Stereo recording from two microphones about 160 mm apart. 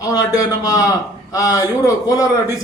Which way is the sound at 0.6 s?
20° left (ahead or behind).